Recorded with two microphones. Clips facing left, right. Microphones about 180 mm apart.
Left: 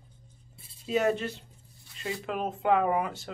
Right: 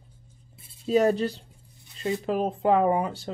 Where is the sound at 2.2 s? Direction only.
35° right (ahead or behind).